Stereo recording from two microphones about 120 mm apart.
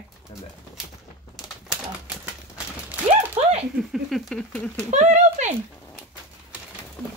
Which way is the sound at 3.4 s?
60° right (ahead or behind).